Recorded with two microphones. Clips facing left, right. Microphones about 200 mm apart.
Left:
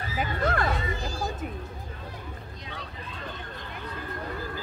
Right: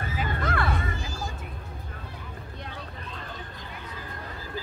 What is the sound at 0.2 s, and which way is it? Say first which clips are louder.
Music: left 3 dB; 45° left (ahead or behind).